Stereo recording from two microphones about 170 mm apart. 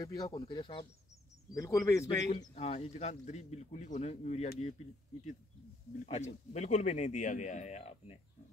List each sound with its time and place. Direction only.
0.0 s speech: 20° left (ahead or behind)
2.5 s a man's voice: 40° left (ahead or behind)
6.0 s speech: 40° left (ahead or behind)